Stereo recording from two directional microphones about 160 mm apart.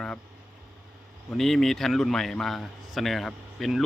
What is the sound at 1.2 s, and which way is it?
A man's voice, centre (ahead or behind).